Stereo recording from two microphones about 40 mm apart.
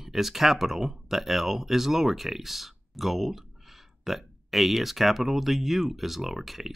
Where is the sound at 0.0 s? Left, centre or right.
Centre.